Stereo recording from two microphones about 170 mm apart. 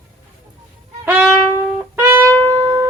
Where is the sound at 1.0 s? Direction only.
10° right (ahead or behind).